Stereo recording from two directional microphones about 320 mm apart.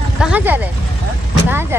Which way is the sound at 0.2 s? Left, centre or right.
Centre.